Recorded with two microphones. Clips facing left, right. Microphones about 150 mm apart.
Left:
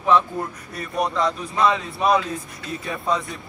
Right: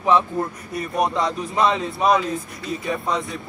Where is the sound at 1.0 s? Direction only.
25° right (ahead or behind).